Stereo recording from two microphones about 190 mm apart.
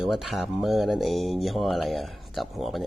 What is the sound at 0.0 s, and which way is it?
Speech, centre (ahead or behind).